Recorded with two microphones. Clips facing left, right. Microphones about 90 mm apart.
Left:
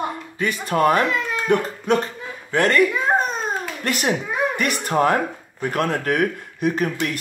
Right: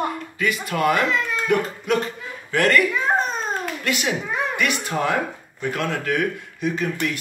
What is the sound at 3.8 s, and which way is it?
Speech, 45° left (ahead or behind).